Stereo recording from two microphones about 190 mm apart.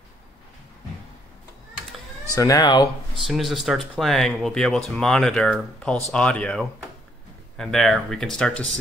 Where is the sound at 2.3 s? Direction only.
20° left (ahead or behind).